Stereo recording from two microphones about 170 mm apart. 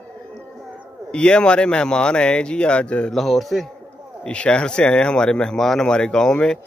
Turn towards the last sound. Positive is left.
turn(degrees=5)  # may be behind; listen again after turning